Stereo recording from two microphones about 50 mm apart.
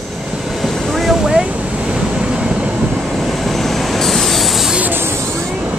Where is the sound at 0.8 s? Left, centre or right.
Centre.